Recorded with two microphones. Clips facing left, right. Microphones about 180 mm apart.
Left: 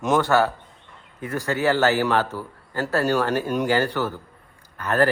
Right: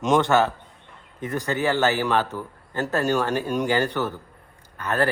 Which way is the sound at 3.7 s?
15° right (ahead or behind).